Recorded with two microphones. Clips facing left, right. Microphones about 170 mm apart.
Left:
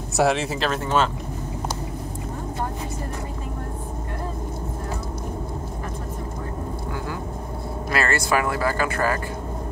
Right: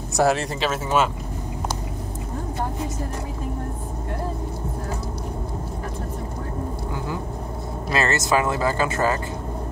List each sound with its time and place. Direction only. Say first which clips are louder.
0.2 s speech: even; centre (ahead or behind)
7.9 s speech: right 1 dB; 20° right (ahead or behind)